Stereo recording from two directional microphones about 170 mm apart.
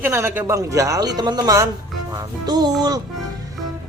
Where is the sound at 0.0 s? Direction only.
15° right (ahead or behind).